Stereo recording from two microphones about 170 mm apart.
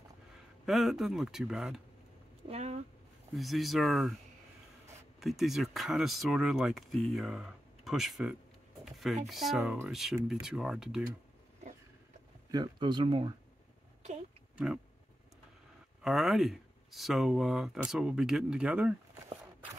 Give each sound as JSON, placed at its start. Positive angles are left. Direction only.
{"t": 0.7, "sound": "speech", "side_deg": 0}
{"t": 2.4, "sound": "speech", "side_deg": -40}
{"t": 3.3, "sound": "speech", "side_deg": 0}
{"t": 5.2, "sound": "speech", "side_deg": 0}
{"t": 12.4, "sound": "speech", "side_deg": -25}
{"t": 16.0, "sound": "speech", "side_deg": 0}